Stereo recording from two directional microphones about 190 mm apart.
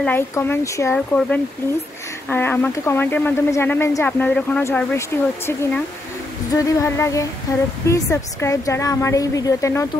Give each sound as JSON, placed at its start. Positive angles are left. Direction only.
{"t": 0.0, "sound": "speech", "side_deg": 10}